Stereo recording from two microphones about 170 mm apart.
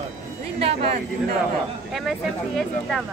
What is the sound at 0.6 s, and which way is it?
Speech, 35° right (ahead or behind).